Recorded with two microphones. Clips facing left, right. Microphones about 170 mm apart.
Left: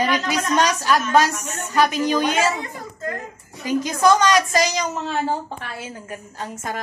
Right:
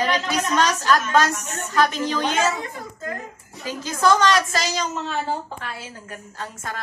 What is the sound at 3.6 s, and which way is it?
A woman's voice, 15° left (ahead or behind).